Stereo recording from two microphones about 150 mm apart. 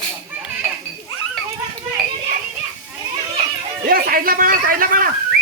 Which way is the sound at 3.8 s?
75° right (ahead or behind).